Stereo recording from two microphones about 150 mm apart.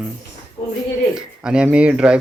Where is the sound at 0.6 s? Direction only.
30° left (ahead or behind).